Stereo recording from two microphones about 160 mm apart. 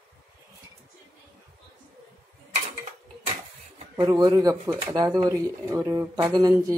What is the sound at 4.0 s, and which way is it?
Speech, 25° right (ahead or behind).